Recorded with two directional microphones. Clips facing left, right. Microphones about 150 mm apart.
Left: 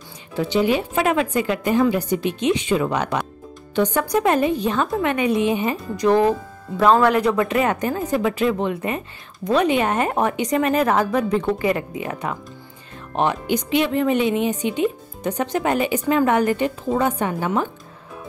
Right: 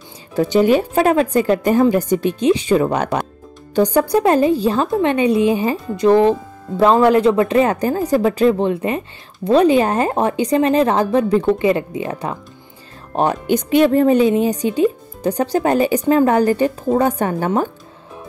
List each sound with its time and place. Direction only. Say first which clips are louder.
0.4 s speech: right 6 dB; 45° right (ahead or behind); by 12.4 s 30° right (ahead or behind)
13.1 s speech: right 4 dB; 40° right (ahead or behind)